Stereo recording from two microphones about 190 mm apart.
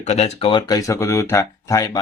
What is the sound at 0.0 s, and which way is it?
Speech, 35° left (ahead or behind).